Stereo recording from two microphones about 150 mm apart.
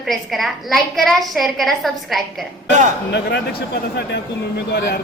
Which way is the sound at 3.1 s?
90° left.